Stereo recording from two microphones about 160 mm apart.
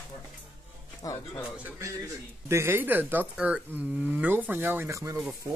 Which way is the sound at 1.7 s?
15° right (ahead or behind).